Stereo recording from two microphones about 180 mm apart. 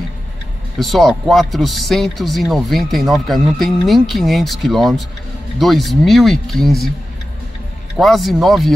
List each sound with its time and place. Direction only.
0.7 s speech: centre (ahead or behind)
8.0 s speech: centre (ahead or behind)